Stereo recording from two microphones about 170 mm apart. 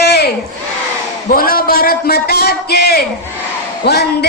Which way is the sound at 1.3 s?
60° left (ahead or behind).